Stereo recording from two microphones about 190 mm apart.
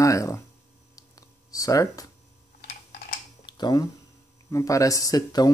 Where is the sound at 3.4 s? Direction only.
20° left (ahead or behind).